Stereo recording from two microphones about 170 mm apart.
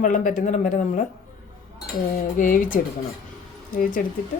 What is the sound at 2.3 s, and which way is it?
Speech, 50° left (ahead or behind).